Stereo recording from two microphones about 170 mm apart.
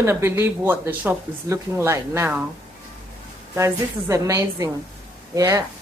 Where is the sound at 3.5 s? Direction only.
15° right (ahead or behind).